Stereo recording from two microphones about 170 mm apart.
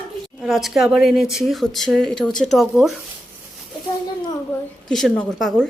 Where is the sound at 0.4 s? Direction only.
Centre (ahead or behind).